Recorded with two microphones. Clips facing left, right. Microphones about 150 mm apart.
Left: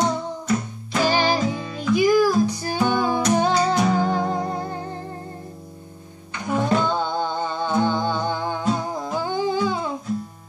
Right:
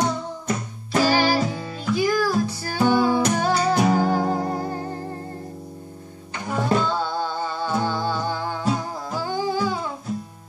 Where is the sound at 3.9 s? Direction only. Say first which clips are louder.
Right 1 dB; 40° right (ahead or behind).